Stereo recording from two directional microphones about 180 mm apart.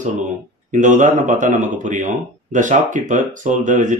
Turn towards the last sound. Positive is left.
turn(degrees=-45)  # may be behind; listen again after turning